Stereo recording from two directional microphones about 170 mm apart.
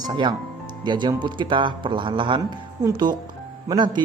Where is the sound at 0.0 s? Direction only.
25° right (ahead or behind).